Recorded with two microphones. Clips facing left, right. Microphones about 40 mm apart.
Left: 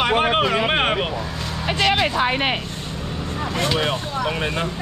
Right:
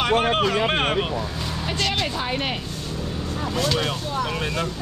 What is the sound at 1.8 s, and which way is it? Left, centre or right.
Music, left.